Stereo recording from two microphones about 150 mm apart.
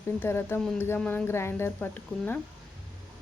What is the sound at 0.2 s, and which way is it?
Speech, 15° left (ahead or behind).